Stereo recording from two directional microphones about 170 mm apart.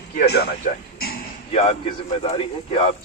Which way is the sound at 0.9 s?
65° left (ahead or behind).